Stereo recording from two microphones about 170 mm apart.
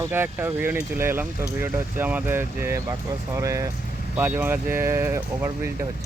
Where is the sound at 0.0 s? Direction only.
15° right (ahead or behind).